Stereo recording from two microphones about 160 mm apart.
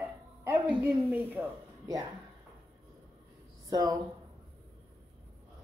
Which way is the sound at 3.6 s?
20° right (ahead or behind).